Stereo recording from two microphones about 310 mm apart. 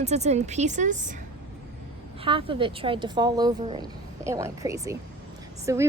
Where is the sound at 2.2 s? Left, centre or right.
Centre.